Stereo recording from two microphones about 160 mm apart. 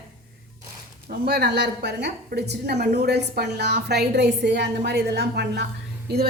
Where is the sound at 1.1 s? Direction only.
70° right (ahead or behind); by 6.2 s 90° right.